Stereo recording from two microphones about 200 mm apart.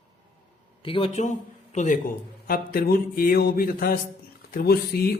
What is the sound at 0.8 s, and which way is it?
A man's voice, 25° left (ahead or behind).